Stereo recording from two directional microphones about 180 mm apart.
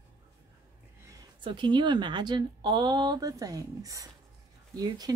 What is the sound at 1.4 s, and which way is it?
Speech, 25° right (ahead or behind).